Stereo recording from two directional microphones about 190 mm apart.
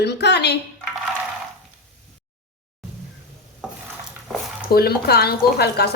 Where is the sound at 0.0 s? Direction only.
60° left (ahead or behind).